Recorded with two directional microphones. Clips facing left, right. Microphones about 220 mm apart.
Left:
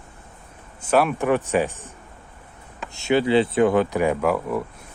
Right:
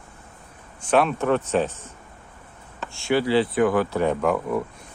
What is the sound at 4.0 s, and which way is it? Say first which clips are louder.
Speech: left 1 dB; 5° left (ahead or behind).